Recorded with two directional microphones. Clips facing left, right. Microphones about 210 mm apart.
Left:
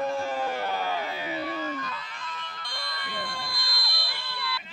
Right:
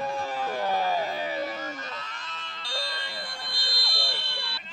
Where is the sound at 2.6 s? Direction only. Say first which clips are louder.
Right 4 dB; 25° right (ahead or behind).